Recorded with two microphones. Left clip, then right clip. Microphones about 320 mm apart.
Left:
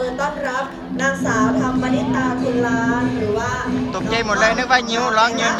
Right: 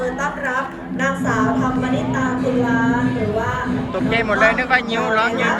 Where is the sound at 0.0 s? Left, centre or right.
Left.